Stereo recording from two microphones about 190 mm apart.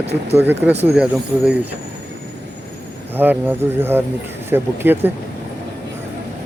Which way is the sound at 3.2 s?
10° right (ahead or behind).